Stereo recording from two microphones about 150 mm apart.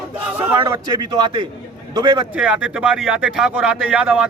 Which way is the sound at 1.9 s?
30° right (ahead or behind).